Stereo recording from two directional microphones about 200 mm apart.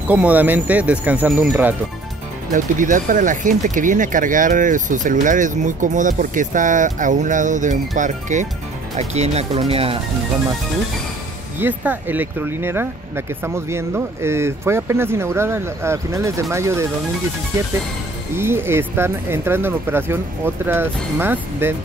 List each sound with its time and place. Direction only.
0.1 s speech: 5° right (ahead or behind)
2.5 s speech: 40° right (ahead or behind)
11.6 s speech: 10° right (ahead or behind)
18.3 s speech: 10° right (ahead or behind)